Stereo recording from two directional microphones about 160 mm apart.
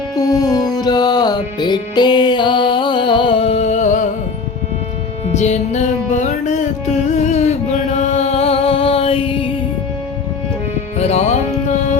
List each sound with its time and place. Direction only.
0.2 s music: 25° left (ahead or behind); by 4.1 s 50° left (ahead or behind)
5.3 s music: 45° left (ahead or behind)
10.9 s music: 40° left (ahead or behind)